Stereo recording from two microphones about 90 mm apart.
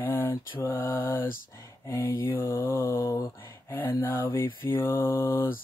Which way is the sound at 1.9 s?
35° left (ahead or behind).